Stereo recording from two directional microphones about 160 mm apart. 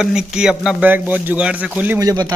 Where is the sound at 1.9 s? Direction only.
25° right (ahead or behind).